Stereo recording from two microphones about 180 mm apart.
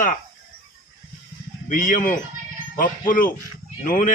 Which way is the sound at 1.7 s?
45° left (ahead or behind).